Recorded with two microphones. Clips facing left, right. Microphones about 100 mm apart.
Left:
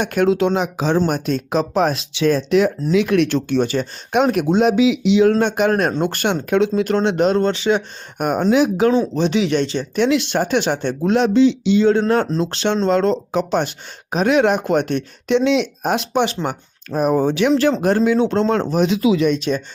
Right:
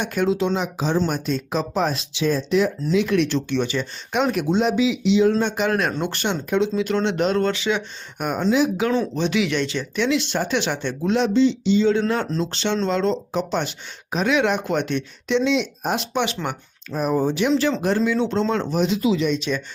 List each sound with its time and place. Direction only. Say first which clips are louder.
0.0 s speech: left 5 dB; 60° left (ahead or behind)
0.9 s speech: left 3 dB; 55° left (ahead or behind)
5.6 s speech: left 5 dB; 40° left (ahead or behind); by 6.8 s 60° left (ahead or behind)
6.8 s speech: left 4 dB; 45° left (ahead or behind)
7.3 s speech: left 4 dB; 30° left (ahead or behind)
8.2 s speech: left 4 dB; 55° left (ahead or behind)
9.1 s speech: left 4 dB; 35° left (ahead or behind); by 16.0 s 65° left (ahead or behind)
16.1 s speech: left 5 dB; 40° left (ahead or behind)
16.9 s speech: left 4 dB; 60° left (ahead or behind)
18.9 s speech: left 4 dB; 85° left
19.5 s speech: left 4 dB; 35° left (ahead or behind)